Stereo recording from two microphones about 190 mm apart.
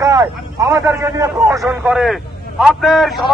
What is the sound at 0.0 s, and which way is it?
A man's voice, 15° right (ahead or behind).